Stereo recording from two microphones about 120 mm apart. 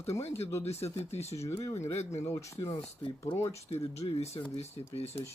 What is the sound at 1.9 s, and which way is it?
Speech, 65° left (ahead or behind).